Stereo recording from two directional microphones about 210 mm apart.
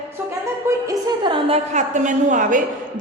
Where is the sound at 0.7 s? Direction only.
20° right (ahead or behind).